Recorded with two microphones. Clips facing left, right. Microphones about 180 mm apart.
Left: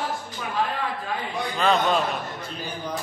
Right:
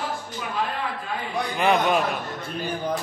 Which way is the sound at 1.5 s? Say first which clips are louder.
Right 1 dB; 15° right (ahead or behind).